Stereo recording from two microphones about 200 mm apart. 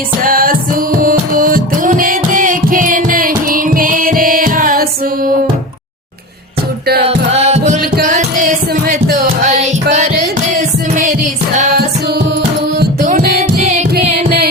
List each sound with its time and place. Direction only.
0.2 s music: 45° right (ahead or behind)
7.0 s music: 30° right (ahead or behind)
7.8 s music: 45° right (ahead or behind)
12.8 s music: 40° right (ahead or behind)
14.3 s carnatic music: 50° right (ahead or behind)